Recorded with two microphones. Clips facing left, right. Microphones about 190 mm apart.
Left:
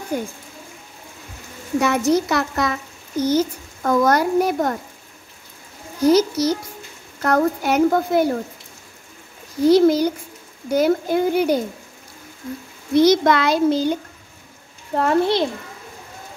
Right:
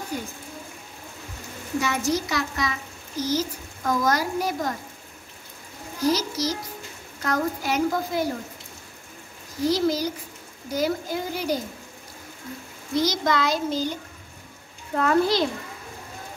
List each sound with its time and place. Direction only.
0.1 s speech: 55° left (ahead or behind)
1.8 s a woman's voice: 60° left (ahead or behind)
6.0 s a woman's voice: 60° left (ahead or behind)
9.7 s a woman's voice: 60° left (ahead or behind)
12.9 s a woman's voice: 65° left (ahead or behind)
15.0 s a child's voice: 25° left (ahead or behind)